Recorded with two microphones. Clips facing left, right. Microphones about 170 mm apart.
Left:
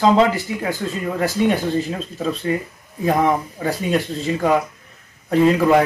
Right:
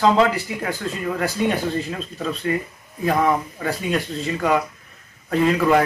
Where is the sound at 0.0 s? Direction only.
20° left (ahead or behind).